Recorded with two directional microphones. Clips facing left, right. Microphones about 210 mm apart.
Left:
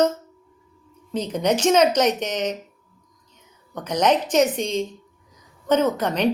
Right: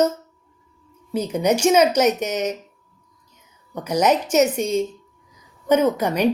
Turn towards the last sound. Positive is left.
turn(degrees=-10)  # may be behind; listen again after turning